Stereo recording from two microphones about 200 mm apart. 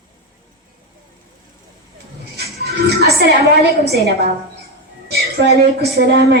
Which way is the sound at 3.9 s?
50° right (ahead or behind).